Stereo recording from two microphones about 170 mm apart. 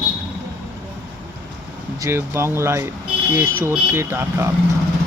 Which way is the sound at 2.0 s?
15° right (ahead or behind).